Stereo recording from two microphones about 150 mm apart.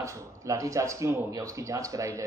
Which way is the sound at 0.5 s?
20° right (ahead or behind).